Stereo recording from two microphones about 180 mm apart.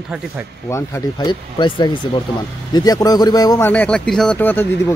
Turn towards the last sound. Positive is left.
turn(degrees=10)  # may be behind; listen again after turning